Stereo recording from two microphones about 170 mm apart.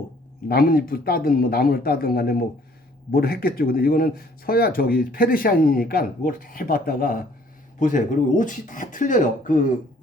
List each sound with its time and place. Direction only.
0.4 s speech: 60° left (ahead or behind)
7.8 s speech: 50° left (ahead or behind)